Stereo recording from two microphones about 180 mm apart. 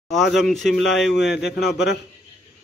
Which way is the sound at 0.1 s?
Centre (ahead or behind).